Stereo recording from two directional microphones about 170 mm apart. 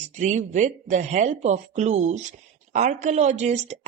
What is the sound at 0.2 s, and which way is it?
Speech, 45° right (ahead or behind).